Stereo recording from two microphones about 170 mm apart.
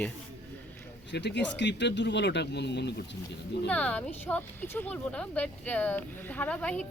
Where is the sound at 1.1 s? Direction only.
90° left.